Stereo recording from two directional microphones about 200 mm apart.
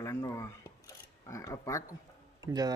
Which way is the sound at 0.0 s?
15° left (ahead or behind).